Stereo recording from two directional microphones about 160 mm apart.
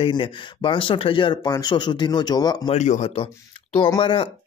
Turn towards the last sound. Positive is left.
turn(degrees=35)  # may be behind; listen again after turning